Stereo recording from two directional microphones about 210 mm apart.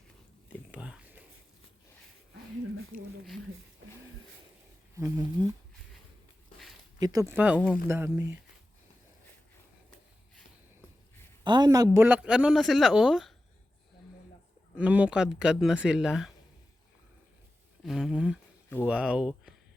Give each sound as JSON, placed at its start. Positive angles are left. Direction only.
{"t": 0.4, "sound": "whispering", "side_deg": -5}
{"t": 3.8, "sound": "a sound", "side_deg": -60}
{"t": 4.9, "sound": "speech", "side_deg": -15}
{"t": 7.0, "sound": "speech", "side_deg": -15}
{"t": 11.4, "sound": "speech", "side_deg": -20}
{"t": 14.8, "sound": "speech", "side_deg": -5}
{"t": 17.8, "sound": "speech", "side_deg": 0}